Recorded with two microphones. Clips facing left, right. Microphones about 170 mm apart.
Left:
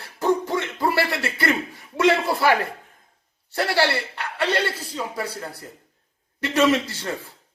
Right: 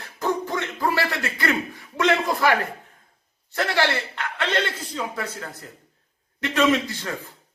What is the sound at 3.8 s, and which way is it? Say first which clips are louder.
Speech: left 1 dB; 10° left (ahead or behind).